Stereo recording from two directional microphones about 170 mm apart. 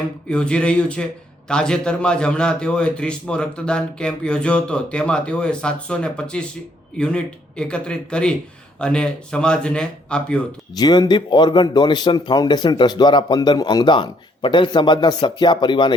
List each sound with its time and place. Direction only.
0.3 s a man's voice: 5° left (ahead or behind)
10.8 s speech: 25° left (ahead or behind)